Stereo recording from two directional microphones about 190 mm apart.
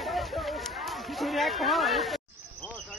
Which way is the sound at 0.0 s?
Centre (ahead or behind).